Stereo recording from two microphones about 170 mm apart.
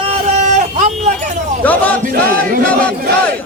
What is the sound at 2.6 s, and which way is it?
Battle cry, 10° left (ahead or behind).